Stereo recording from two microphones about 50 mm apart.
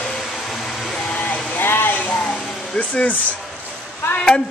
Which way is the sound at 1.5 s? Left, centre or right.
Left.